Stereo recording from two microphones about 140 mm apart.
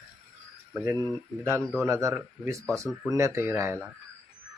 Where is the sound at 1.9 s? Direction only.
20° right (ahead or behind).